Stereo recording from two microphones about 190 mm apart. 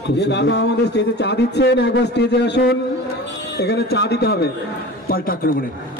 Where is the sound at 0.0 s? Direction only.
65° left (ahead or behind).